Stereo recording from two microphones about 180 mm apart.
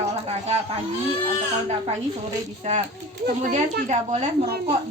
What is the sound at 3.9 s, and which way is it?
Speech, 40° right (ahead or behind).